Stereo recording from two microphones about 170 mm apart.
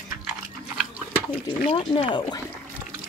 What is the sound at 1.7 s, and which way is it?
Speech, 30° left (ahead or behind).